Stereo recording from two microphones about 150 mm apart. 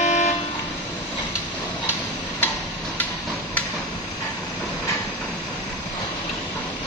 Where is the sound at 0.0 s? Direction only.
55° left (ahead or behind).